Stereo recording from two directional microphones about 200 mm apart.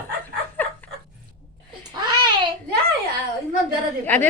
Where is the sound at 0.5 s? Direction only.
10° left (ahead or behind).